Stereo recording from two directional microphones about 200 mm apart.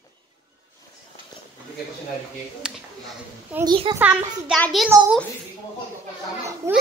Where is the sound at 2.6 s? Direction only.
5° right (ahead or behind).